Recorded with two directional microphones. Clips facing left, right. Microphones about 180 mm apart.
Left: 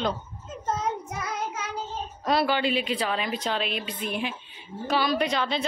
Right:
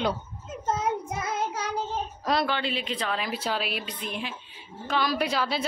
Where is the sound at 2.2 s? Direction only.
5° left (ahead or behind).